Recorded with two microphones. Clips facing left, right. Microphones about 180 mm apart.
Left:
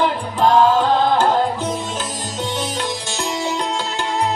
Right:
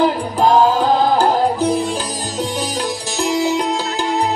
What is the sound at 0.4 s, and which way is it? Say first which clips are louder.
Music: right 1 dB; 40° right (ahead or behind).